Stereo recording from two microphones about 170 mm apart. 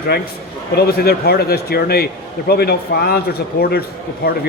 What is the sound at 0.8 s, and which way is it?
A man's voice, 65° left (ahead or behind).